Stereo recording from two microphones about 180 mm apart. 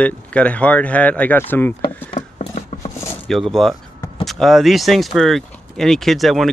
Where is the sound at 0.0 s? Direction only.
5° left (ahead or behind).